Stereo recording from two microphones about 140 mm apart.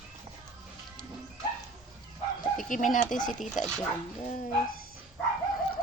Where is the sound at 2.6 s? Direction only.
65° left (ahead or behind).